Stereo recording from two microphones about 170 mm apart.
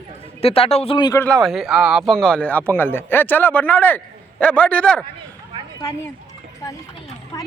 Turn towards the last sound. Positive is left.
turn(degrees=20)  # may be behind; listen again after turning